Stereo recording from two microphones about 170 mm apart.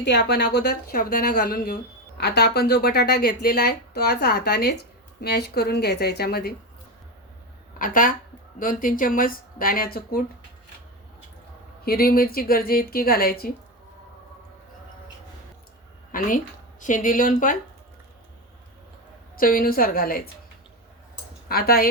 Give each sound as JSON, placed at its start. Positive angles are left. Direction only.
{"t": 0.0, "sound": "speech", "side_deg": 75}
{"t": 2.2, "sound": "speech", "side_deg": 70}
{"t": 7.8, "sound": "speech", "side_deg": 55}
{"t": 11.9, "sound": "speech", "side_deg": 60}
{"t": 16.1, "sound": "a sound", "side_deg": 50}
{"t": 16.8, "sound": "speech", "side_deg": 50}
{"t": 19.4, "sound": "speech", "side_deg": 55}
{"t": 21.5, "sound": "speech", "side_deg": 65}